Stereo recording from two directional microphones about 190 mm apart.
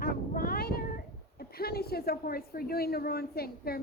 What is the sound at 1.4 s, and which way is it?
A woman's voice, 55° left (ahead or behind).